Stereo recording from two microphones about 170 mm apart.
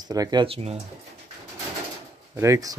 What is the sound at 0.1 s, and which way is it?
Speech, 25° right (ahead or behind).